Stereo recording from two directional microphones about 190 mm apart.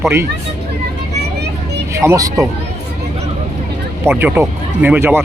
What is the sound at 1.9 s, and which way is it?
Speech, 15° right (ahead or behind).